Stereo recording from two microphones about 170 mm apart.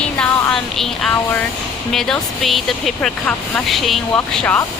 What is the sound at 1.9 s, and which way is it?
Speech, centre (ahead or behind).